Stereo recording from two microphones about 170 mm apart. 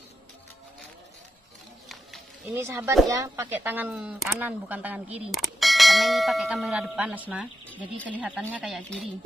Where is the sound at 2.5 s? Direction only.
15° right (ahead or behind).